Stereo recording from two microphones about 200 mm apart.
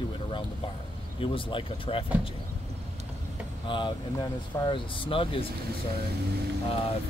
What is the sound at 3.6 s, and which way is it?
Speech, 25° left (ahead or behind).